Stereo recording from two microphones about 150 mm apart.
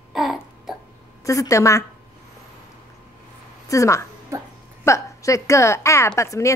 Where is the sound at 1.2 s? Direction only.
20° left (ahead or behind).